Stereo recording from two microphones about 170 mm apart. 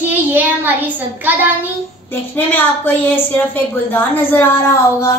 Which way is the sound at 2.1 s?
10° left (ahead or behind).